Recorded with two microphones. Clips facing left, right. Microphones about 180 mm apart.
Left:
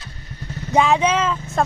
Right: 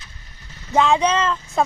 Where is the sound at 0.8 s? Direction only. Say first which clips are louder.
Even; 5° left (ahead or behind).